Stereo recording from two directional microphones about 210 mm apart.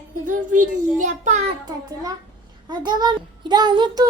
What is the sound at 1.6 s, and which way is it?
Child singing, 20° right (ahead or behind).